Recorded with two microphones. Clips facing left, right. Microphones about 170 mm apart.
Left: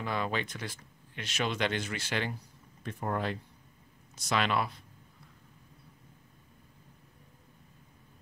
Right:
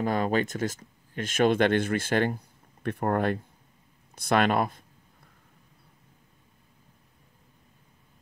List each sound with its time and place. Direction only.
0.0 s speech: 45° right (ahead or behind)